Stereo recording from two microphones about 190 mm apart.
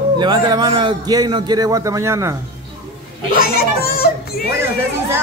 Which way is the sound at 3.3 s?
50° left (ahead or behind).